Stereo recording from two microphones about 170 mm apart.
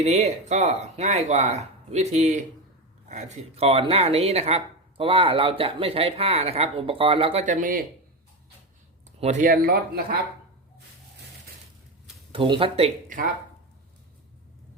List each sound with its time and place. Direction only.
0.0 s speech: 40° right (ahead or behind)
7.4 s speech: 50° right (ahead or behind)
9.2 s speech: 50° right (ahead or behind)
12.3 s speech: 30° right (ahead or behind)